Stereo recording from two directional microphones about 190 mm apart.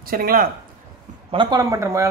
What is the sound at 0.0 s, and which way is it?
Speech, 50° right (ahead or behind).